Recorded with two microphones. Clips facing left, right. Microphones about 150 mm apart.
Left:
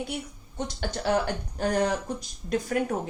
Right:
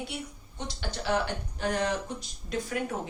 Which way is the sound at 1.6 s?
40° left (ahead or behind).